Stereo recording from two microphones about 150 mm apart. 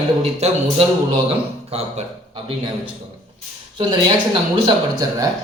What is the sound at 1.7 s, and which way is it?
Speech, 45° right (ahead or behind).